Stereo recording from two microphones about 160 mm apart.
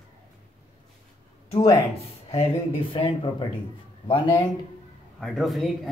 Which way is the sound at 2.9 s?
35° left (ahead or behind).